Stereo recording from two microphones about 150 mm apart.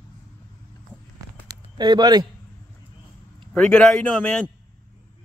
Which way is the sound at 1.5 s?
30° right (ahead or behind).